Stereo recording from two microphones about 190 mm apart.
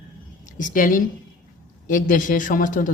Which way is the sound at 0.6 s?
45° left (ahead or behind).